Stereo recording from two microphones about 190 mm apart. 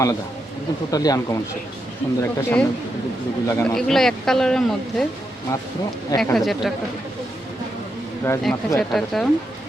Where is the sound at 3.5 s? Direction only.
15° left (ahead or behind).